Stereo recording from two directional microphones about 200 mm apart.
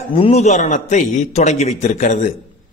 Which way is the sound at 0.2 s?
35° left (ahead or behind).